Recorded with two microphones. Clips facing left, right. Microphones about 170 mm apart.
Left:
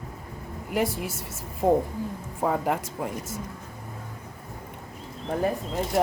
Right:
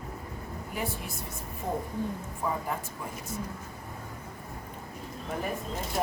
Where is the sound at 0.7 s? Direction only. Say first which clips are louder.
Left 9 dB; 85° left.